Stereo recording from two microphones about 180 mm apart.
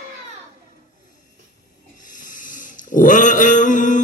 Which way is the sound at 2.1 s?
45° left (ahead or behind).